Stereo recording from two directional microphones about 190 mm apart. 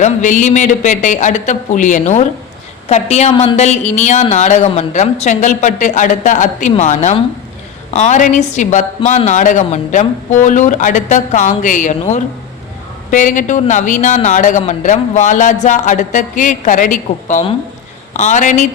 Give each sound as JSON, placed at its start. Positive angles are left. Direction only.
{"t": 0.0, "sound": "a woman's voice", "side_deg": 40}